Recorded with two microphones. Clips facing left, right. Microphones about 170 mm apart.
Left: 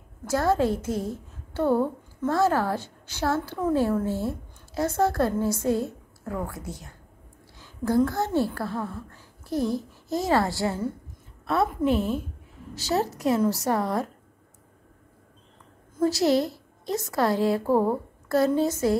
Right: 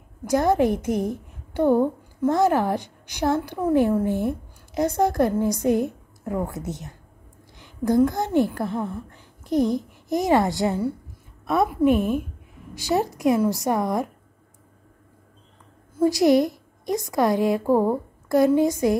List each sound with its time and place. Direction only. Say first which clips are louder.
0.2 s a woman's voice: right 3 dB; 15° right (ahead or behind)
16.0 s a woman's voice: right 4 dB; 15° right (ahead or behind)